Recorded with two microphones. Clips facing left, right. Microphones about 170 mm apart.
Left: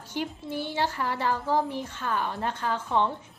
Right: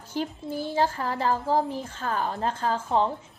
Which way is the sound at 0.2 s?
35° right (ahead or behind).